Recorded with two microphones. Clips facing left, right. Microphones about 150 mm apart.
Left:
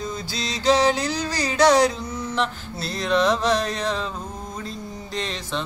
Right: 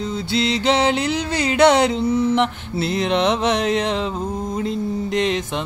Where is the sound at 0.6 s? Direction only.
25° right (ahead or behind).